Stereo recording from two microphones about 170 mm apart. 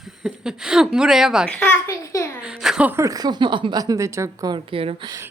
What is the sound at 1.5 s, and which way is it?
Speech, 10° left (ahead or behind).